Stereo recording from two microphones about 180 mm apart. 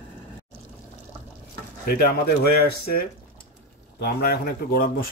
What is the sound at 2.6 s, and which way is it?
Speech, 60° left (ahead or behind).